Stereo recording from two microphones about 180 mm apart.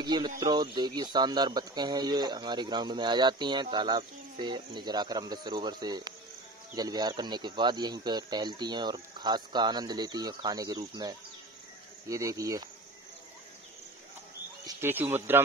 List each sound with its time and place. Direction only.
0.0 s speech: 25° right (ahead or behind)
14.7 s speech: 10° right (ahead or behind)